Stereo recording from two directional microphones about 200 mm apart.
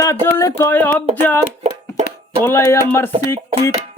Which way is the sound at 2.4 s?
10° left (ahead or behind).